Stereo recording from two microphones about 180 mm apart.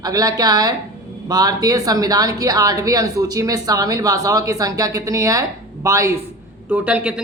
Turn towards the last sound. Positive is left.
turn(degrees=-5)  # may be behind; listen again after turning